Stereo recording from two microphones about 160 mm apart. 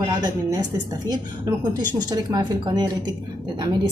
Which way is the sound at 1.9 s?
25° right (ahead or behind).